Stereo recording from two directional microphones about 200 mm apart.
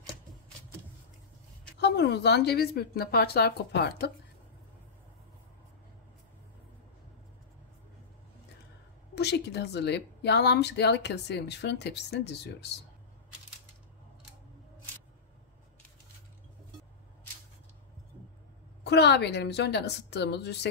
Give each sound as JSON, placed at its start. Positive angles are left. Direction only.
{"t": 1.8, "sound": "speech", "side_deg": 55}
{"t": 9.1, "sound": "speech", "side_deg": 55}
{"t": 18.9, "sound": "speech", "side_deg": 55}